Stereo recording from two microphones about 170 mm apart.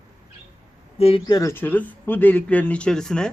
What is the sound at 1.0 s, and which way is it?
Speech, 35° left (ahead or behind).